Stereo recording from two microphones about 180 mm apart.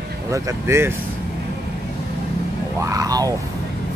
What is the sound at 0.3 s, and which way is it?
Speech, 15° right (ahead or behind).